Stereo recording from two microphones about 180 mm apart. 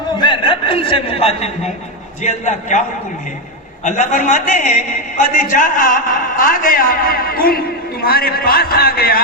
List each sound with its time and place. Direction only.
0.2 s a man's voice: 25° left (ahead or behind)
3.8 s a man's voice: 40° left (ahead or behind)